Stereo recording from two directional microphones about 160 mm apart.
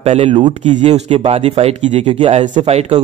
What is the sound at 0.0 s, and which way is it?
Speech, 40° right (ahead or behind).